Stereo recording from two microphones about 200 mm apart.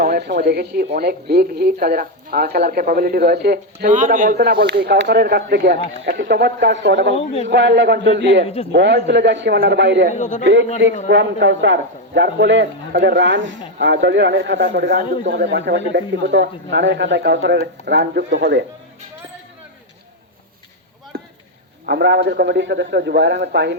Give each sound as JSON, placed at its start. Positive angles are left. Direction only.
{"t": 0.0, "sound": "a man's voice", "side_deg": -55}
{"t": 7.1, "sound": "a man's voice", "side_deg": 30}
{"t": 7.4, "sound": "a man's voice", "side_deg": -60}
{"t": 10.1, "sound": "a man's voice", "side_deg": 35}
{"t": 10.4, "sound": "a man's voice", "side_deg": -65}
{"t": 21.8, "sound": "a man's voice", "side_deg": -55}